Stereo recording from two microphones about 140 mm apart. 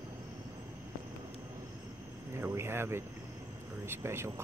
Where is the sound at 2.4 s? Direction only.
20° right (ahead or behind).